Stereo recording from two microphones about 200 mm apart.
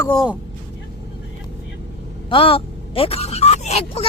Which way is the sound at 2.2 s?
25° left (ahead or behind).